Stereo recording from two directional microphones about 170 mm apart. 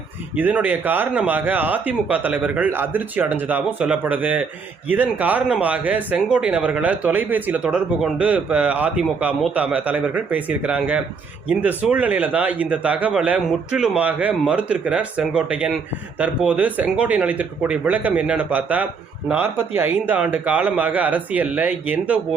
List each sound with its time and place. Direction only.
0.3 s a man's voice: 10° right (ahead or behind)